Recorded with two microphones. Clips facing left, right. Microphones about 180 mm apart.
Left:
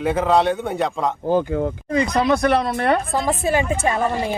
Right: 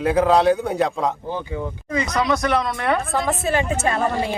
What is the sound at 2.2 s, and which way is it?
Speech, 55° left (ahead or behind).